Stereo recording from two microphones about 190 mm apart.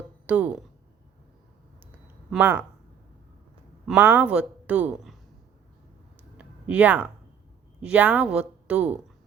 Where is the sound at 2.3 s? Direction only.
10° right (ahead or behind).